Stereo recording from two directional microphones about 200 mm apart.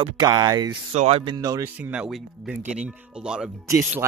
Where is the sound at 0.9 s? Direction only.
30° right (ahead or behind).